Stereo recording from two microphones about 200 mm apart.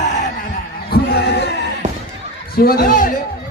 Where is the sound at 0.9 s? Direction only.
50° left (ahead or behind).